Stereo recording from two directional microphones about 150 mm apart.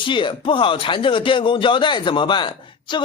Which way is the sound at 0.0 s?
35° left (ahead or behind).